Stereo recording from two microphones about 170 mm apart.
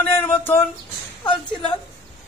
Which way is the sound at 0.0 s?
10° left (ahead or behind).